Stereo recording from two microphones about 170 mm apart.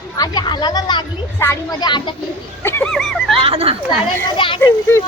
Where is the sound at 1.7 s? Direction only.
25° left (ahead or behind).